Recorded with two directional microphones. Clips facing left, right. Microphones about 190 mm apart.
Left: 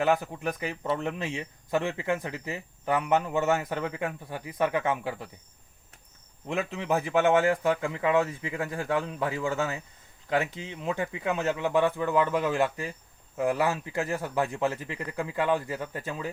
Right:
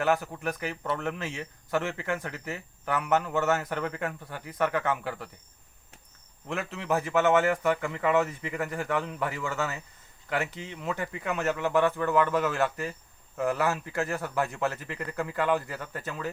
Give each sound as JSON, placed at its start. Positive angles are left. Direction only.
{"t": 0.0, "sound": "speech", "side_deg": 15}
{"t": 6.5, "sound": "speech", "side_deg": 15}